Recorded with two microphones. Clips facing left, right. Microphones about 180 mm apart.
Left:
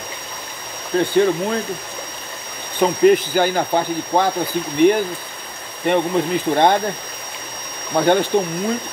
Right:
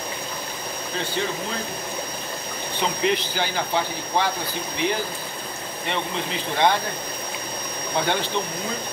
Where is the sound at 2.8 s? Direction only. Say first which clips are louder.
Left 10 dB; 45° left (ahead or behind).